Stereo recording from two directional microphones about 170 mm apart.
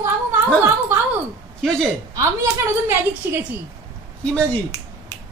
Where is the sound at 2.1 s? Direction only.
15° right (ahead or behind).